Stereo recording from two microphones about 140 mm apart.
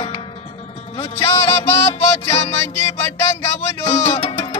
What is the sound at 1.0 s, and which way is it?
Music, 40° left (ahead or behind).